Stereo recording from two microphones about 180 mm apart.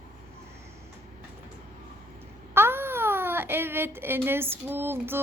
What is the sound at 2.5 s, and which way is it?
Baby cry, 10° right (ahead or behind).